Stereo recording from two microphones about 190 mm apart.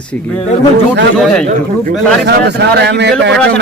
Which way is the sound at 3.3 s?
5° left (ahead or behind).